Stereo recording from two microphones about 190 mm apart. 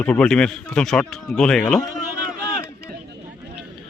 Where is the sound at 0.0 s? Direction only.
5° left (ahead or behind).